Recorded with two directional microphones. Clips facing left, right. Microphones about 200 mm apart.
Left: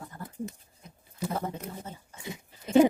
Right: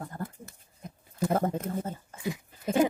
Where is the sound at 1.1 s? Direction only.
50° right (ahead or behind).